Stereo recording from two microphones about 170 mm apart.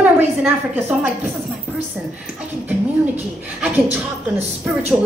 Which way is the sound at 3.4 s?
10° right (ahead or behind).